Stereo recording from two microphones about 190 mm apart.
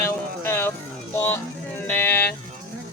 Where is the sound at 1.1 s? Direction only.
10° left (ahead or behind).